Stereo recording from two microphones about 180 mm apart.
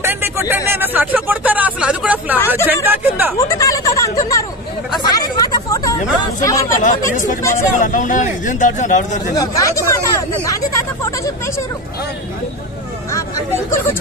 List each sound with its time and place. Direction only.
0.0 s a sound: 15° right (ahead or behind)
0.7 s speech: 10° right (ahead or behind)
3.3 s a sound: 20° left (ahead or behind)
5.0 s chatter: 20° left (ahead or behind)
6.8 s speech: 45° left (ahead or behind)
9.3 s speech: 20° left (ahead or behind)